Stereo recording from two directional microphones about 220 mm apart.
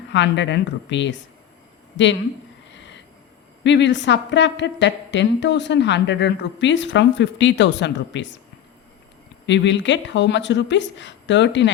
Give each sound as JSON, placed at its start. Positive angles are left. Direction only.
{"t": 0.1, "sound": "a woman's voice", "side_deg": 55}
{"t": 2.7, "sound": "a sound", "side_deg": 55}
{"t": 3.6, "sound": "a woman's voice", "side_deg": 55}
{"t": 9.5, "sound": "speech", "side_deg": 55}